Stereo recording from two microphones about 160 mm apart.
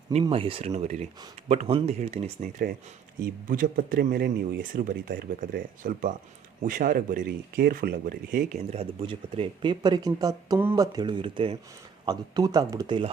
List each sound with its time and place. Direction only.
0.1 s speech: 40° right (ahead or behind)
2.4 s speech: 55° right (ahead or behind)
8.7 s speech: 35° right (ahead or behind)